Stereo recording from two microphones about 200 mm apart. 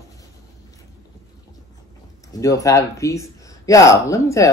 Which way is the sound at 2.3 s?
15° left (ahead or behind).